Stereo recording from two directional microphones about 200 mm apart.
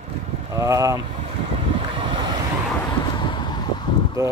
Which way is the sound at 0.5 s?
15° right (ahead or behind).